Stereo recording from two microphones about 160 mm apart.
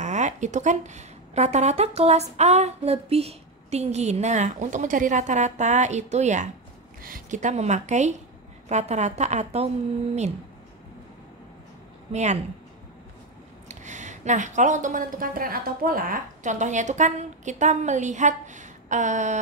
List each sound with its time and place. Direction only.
0.0 s a woman's voice: 45° right (ahead or behind)
7.0 s a woman's voice: 65° right (ahead or behind); by 9.7 s 45° right (ahead or behind)
12.1 s a woman's voice: 45° right (ahead or behind)
13.7 s a woman's voice: 50° right (ahead or behind)